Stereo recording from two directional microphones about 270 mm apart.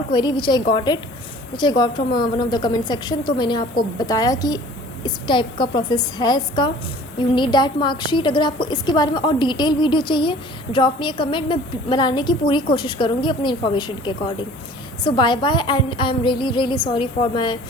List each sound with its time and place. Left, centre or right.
0.1 s a woman's voice: centre